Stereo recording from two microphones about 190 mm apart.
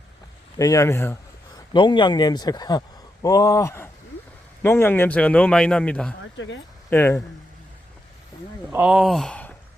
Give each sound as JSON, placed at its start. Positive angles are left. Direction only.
{"t": 0.6, "sound": "speech", "side_deg": 15}
{"t": 1.7, "sound": "a man's voice", "side_deg": 25}
{"t": 6.3, "sound": "speech", "side_deg": 75}
{"t": 6.9, "sound": "a man's voice", "side_deg": 10}
{"t": 8.7, "sound": "speech", "side_deg": -5}